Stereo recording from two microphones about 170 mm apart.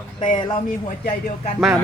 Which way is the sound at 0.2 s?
25° left (ahead or behind).